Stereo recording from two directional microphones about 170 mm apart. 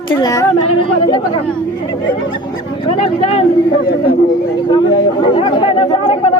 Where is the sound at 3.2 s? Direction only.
35° left (ahead or behind).